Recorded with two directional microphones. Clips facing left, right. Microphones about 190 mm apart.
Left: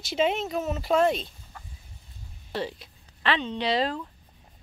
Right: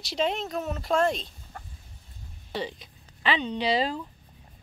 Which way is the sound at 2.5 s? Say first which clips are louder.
Left 1 dB; centre (ahead or behind).